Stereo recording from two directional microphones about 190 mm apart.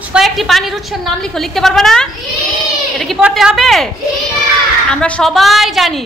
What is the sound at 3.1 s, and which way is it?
Speech, centre (ahead or behind).